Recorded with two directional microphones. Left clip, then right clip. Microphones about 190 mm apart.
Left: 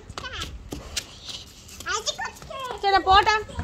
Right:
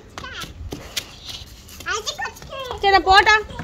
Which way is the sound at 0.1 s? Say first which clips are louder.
Right 1 dB; 45° left (ahead or behind).